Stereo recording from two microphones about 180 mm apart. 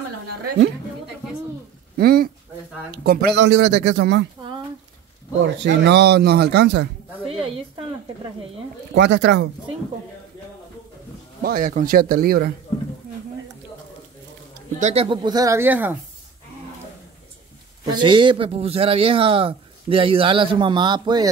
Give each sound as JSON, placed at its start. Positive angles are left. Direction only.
{"t": 2.0, "sound": "speech", "side_deg": -60}
{"t": 5.4, "sound": "a man's voice", "side_deg": -85}
{"t": 7.2, "sound": "speech", "side_deg": -30}
{"t": 8.9, "sound": "speech", "side_deg": -75}
{"t": 11.4, "sound": "a man's voice", "side_deg": -50}
{"t": 14.8, "sound": "speech", "side_deg": -40}
{"t": 15.0, "sound": "speech", "side_deg": -20}
{"t": 17.8, "sound": "speech", "side_deg": -25}